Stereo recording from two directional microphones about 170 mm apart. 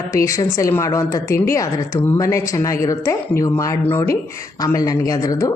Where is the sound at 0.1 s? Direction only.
20° left (ahead or behind).